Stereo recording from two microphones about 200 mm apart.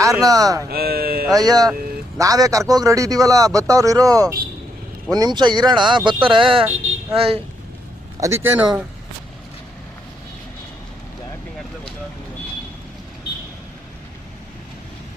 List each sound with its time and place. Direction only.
0.0 s a man's voice: 15° right (ahead or behind)
0.7 s speech: 50° right (ahead or behind)
1.3 s a man's voice: 20° right (ahead or behind)
8.2 s a man's voice: 10° right (ahead or behind)